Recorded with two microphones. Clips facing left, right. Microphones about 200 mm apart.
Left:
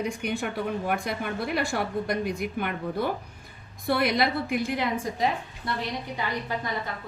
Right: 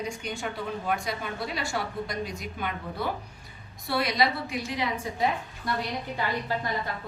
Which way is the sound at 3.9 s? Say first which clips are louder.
Left 2 dB; 55° left (ahead or behind).